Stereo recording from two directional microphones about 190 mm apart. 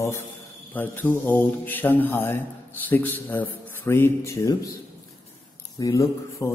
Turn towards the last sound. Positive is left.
turn(degrees=15)  # may be behind; listen again after turning